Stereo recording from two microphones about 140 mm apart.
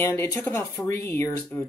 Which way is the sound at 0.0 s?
15° left (ahead or behind).